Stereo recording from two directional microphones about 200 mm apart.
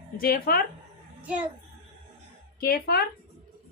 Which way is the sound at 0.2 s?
45° left (ahead or behind).